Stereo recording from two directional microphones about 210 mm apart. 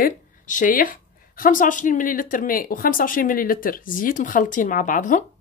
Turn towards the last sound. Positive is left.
turn(degrees=40)  # may be behind; listen again after turning